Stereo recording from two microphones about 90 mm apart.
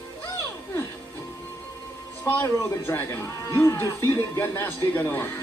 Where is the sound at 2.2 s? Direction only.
35° left (ahead or behind).